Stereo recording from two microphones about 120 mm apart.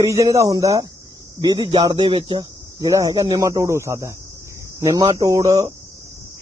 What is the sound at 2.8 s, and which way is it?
Speech, 30° right (ahead or behind).